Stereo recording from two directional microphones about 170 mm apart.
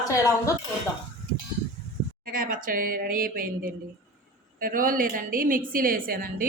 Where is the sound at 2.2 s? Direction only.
55° right (ahead or behind).